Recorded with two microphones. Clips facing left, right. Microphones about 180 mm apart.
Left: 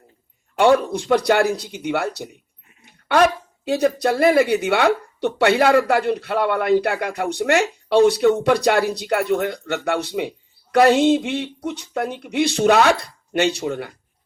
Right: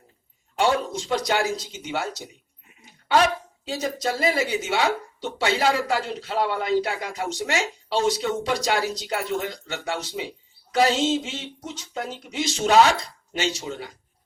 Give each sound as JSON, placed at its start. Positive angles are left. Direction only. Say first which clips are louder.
{"t": 0.6, "sound": "speech", "louder": "left 7 dB", "side_deg": 60}